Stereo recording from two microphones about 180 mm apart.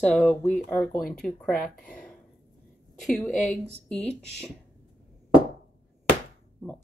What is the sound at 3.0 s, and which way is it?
A woman's voice, centre (ahead or behind).